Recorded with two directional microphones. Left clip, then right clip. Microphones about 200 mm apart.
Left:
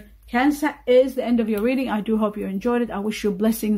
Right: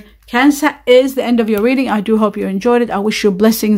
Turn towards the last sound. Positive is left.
turn(degrees=-30)  # may be behind; listen again after turning